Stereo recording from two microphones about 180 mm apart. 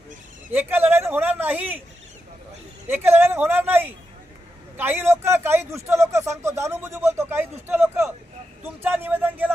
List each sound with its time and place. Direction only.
0.5 s speech: 10° right (ahead or behind)
2.8 s speech: 10° right (ahead or behind)